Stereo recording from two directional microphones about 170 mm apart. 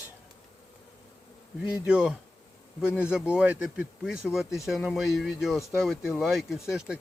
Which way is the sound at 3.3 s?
5° right (ahead or behind).